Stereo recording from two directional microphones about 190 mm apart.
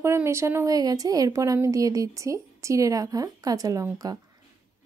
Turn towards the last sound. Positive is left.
turn(degrees=-15)  # may be behind; listen again after turning